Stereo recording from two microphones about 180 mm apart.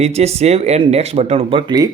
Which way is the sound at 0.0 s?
35° right (ahead or behind).